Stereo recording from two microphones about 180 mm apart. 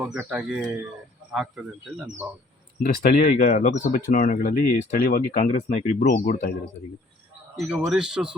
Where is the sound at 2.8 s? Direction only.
50° left (ahead or behind).